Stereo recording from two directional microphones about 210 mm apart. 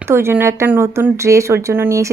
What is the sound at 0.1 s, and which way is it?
Speech, 10° right (ahead or behind).